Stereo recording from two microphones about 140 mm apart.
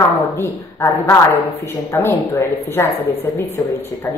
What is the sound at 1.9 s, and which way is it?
A woman's voice, 15° left (ahead or behind).